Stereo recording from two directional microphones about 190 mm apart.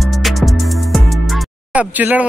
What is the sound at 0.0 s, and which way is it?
Music, centre (ahead or behind).